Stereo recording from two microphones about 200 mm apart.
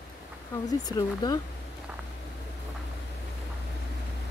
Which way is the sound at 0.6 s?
20° left (ahead or behind).